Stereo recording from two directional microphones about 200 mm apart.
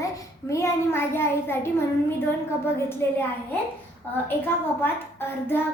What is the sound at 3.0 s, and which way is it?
Speech, 10° left (ahead or behind).